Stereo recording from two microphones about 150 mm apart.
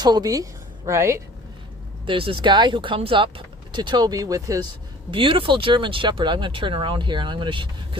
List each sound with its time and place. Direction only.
0.0 s a woman's voice: 25° right (ahead or behind)
2.0 s speech: 35° right (ahead or behind)
5.1 s speech: 35° right (ahead or behind)